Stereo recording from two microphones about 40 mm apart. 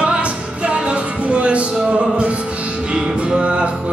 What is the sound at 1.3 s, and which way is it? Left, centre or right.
Music, right.